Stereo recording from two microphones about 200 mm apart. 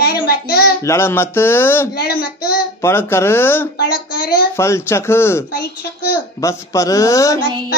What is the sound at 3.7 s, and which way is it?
Speech, 50° left (ahead or behind).